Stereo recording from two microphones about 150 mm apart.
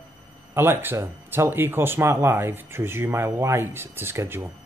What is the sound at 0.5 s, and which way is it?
Speech, 15° right (ahead or behind).